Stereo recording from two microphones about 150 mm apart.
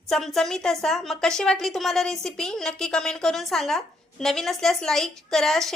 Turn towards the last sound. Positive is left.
turn(degrees=0)  # may be behind; listen again after turning